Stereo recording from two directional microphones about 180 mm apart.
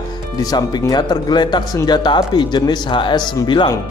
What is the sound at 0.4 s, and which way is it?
Speech, 20° left (ahead or behind).